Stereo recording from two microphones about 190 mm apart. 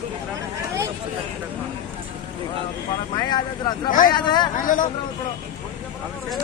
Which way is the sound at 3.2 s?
25° left (ahead or behind).